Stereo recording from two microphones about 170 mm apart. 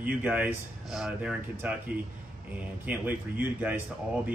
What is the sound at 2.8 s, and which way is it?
Speech, 10° right (ahead or behind).